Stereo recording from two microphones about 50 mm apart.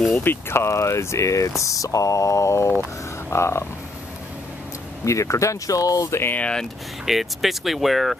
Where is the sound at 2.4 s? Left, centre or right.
Left.